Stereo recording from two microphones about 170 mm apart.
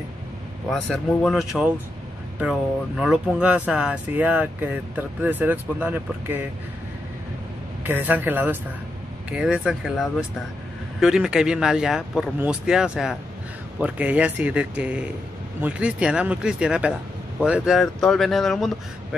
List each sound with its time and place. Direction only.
0.7 s speech: centre (ahead or behind)
3.0 s speech: 5° right (ahead or behind)
7.8 s speech: 10° right (ahead or behind)